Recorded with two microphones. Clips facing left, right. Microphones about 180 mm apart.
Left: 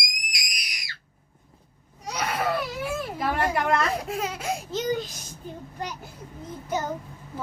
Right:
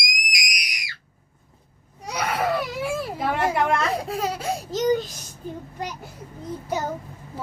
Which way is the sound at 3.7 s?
35° right (ahead or behind).